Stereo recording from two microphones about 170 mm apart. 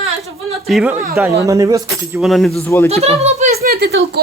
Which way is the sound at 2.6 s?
15° left (ahead or behind).